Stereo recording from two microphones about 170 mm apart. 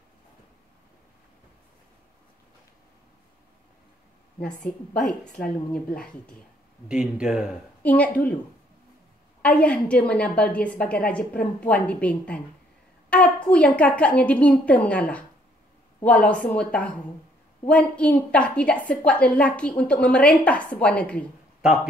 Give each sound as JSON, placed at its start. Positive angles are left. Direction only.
{"t": 4.9, "sound": "a woman's voice", "side_deg": 5}
{"t": 6.9, "sound": "speech", "side_deg": -5}
{"t": 7.8, "sound": "a woman's voice", "side_deg": 10}
{"t": 9.4, "sound": "a woman's voice", "side_deg": 5}